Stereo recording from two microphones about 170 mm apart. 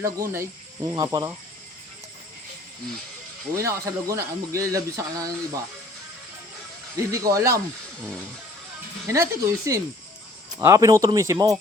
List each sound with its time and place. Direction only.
0.0 s speech: 15° right (ahead or behind)
3.5 s speech: 20° right (ahead or behind)
6.9 s speech: 20° right (ahead or behind)
9.0 s speech: 15° right (ahead or behind)